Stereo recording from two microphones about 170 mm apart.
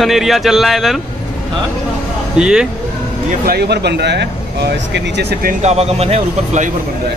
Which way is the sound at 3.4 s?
70° right (ahead or behind).